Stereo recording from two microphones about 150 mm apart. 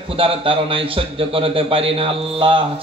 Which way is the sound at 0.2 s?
35° right (ahead or behind).